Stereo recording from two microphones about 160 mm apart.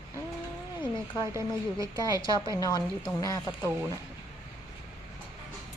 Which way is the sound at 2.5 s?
20° left (ahead or behind).